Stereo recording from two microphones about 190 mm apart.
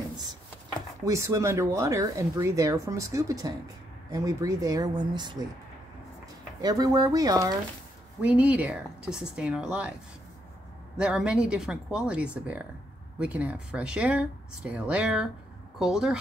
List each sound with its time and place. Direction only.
1.0 s speech: 15° right (ahead or behind)
6.6 s speech: 20° right (ahead or behind)
8.2 s speech: 5° right (ahead or behind)
11.0 s speech: 5° right (ahead or behind)